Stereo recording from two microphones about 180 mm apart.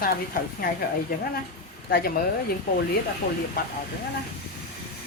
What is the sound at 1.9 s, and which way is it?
Speech, 55° left (ahead or behind).